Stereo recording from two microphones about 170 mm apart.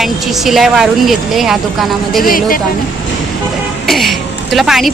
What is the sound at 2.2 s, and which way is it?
Speech, 55° left (ahead or behind).